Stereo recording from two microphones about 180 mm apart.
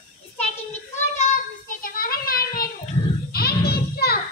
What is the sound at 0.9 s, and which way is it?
Child singing, 40° left (ahead or behind).